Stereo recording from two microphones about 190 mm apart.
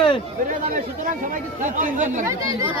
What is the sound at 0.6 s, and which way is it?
Speech, 40° right (ahead or behind).